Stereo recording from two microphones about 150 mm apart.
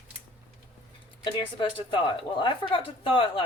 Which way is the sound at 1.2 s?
35° left (ahead or behind).